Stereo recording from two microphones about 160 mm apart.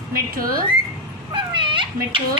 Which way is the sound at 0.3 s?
65° right (ahead or behind).